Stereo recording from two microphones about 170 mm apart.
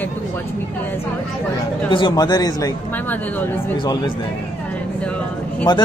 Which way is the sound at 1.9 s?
25° left (ahead or behind).